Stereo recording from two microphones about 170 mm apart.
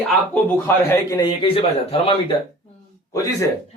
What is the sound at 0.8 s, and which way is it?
A man's voice, 20° left (ahead or behind).